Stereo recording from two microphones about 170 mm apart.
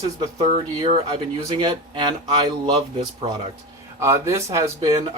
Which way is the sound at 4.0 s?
15° right (ahead or behind).